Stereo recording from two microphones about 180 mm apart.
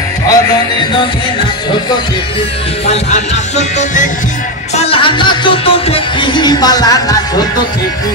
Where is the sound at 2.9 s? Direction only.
40° left (ahead or behind).